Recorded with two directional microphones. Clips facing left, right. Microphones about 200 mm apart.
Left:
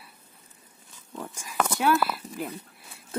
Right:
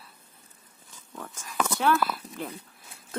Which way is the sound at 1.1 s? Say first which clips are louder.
Left 3 dB; 15° left (ahead or behind).